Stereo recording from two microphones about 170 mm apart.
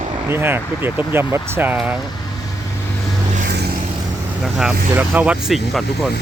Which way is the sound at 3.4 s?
75° right (ahead or behind).